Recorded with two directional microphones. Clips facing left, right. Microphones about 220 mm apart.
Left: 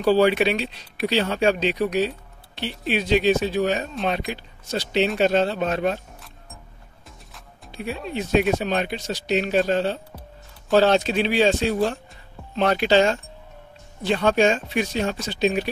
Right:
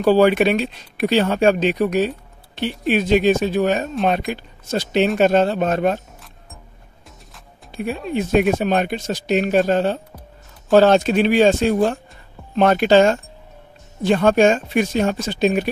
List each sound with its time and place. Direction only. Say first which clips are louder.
0.0 s speech: right 4 dB; 50° right (ahead or behind)
7.7 s speech: right 6 dB; 50° right (ahead or behind)